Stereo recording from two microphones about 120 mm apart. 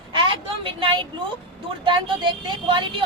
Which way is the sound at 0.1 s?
45° right (ahead or behind).